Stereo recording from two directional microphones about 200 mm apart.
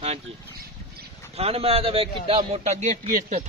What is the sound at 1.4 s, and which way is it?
A man's voice, 30° right (ahead or behind).